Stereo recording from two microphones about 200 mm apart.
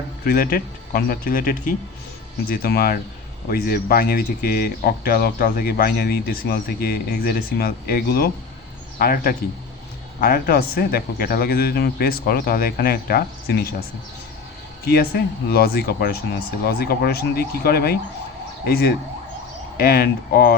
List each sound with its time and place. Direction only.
0.3 s speech: 45° left (ahead or behind)
14.8 s speech: 50° left (ahead or behind)